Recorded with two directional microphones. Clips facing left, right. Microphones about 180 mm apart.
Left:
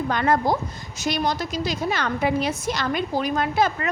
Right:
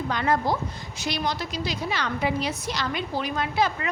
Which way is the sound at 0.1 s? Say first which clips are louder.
Left 3 dB; 50° left (ahead or behind).